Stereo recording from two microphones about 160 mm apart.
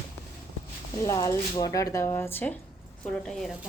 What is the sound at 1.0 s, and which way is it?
Speech, 20° left (ahead or behind).